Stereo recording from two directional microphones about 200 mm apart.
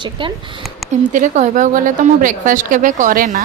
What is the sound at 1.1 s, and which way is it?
A woman's voice, 40° right (ahead or behind).